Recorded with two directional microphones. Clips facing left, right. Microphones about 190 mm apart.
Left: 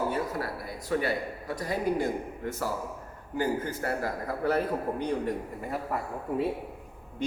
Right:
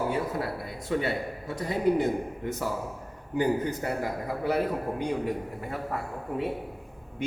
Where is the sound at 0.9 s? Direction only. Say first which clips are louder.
Even; 25° right (ahead or behind).